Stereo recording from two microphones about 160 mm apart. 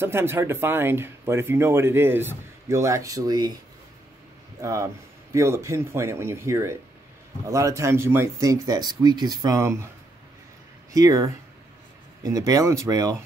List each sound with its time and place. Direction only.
0.0 s speech: 15° right (ahead or behind)
4.6 s speech: 20° right (ahead or behind)
10.9 s speech: 20° right (ahead or behind)